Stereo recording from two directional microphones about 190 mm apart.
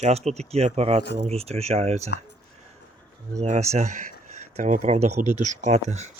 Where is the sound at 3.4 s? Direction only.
40° right (ahead or behind).